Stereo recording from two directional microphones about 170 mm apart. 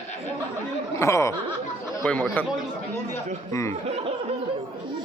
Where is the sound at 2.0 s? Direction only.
5° left (ahead or behind).